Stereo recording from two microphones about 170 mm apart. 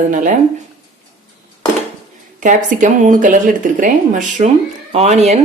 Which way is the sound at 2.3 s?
50° right (ahead or behind).